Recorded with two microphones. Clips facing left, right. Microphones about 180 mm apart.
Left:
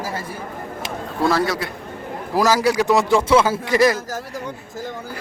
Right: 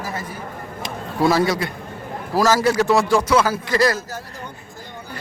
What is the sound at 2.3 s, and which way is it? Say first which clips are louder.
Speech: even; 15° left (ahead or behind).